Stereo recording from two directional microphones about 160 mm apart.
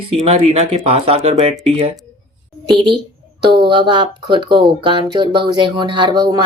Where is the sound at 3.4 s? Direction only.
30° right (ahead or behind).